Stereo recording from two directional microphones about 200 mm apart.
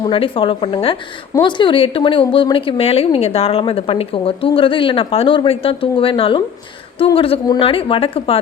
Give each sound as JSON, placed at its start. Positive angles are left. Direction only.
{"t": 0.0, "sound": "speech", "side_deg": 25}